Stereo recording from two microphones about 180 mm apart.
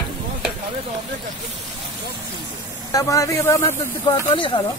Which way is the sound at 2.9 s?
20° left (ahead or behind).